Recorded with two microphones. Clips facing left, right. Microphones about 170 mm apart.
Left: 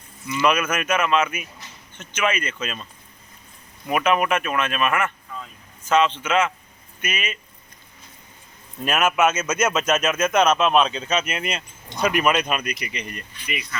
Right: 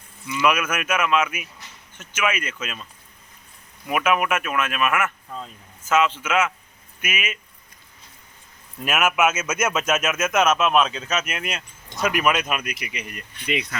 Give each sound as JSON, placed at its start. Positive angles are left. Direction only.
{"t": 0.3, "sound": "speech", "side_deg": -5}
{"t": 3.8, "sound": "speech", "side_deg": -5}
{"t": 8.8, "sound": "speech", "side_deg": -5}
{"t": 13.3, "sound": "speech", "side_deg": -70}